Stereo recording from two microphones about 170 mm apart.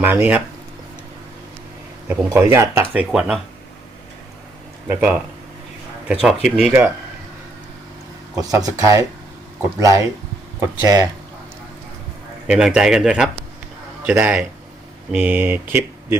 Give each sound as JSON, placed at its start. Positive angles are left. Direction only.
{"t": 0.0, "sound": "speech", "side_deg": -10}
{"t": 2.0, "sound": "speech", "side_deg": -15}
{"t": 4.9, "sound": "speech", "side_deg": -5}
{"t": 6.2, "sound": "speech", "side_deg": -5}
{"t": 8.4, "sound": "speech", "side_deg": -20}
{"t": 12.5, "sound": "speech", "side_deg": -5}